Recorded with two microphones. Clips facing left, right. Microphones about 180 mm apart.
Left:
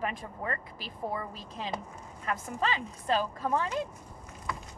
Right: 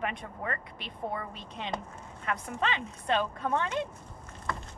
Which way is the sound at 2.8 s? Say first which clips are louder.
Even; centre (ahead or behind).